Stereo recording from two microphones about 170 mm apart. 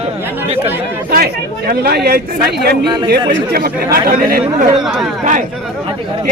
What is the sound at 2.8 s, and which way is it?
Speech, 25° right (ahead or behind).